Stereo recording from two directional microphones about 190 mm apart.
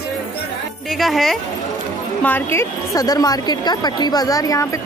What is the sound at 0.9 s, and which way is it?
Speech, centre (ahead or behind).